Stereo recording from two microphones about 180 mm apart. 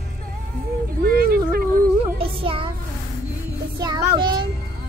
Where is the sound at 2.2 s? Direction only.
30° right (ahead or behind).